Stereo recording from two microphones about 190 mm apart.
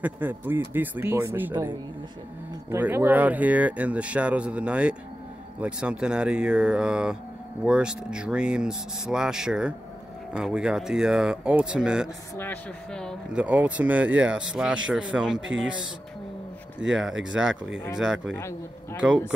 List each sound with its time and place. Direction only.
0.0 s speech: 10° right (ahead or behind)
2.7 s speech: 10° right (ahead or behind)
12.4 s speech: 5° left (ahead or behind)
16.8 s speech: 75° right (ahead or behind)
17.2 s speech: 5° right (ahead or behind)
18.9 s speech: 5° right (ahead or behind)